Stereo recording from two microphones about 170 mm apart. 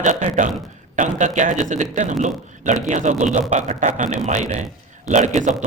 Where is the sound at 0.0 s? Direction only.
45° right (ahead or behind).